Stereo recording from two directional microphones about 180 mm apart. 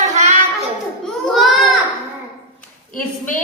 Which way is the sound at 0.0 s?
40° right (ahead or behind).